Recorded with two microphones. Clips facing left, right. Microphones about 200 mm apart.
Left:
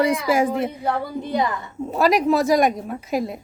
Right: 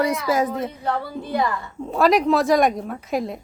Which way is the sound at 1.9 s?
Centre (ahead or behind).